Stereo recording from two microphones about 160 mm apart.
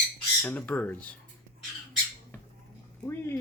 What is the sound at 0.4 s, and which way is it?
Speech, 10° left (ahead or behind).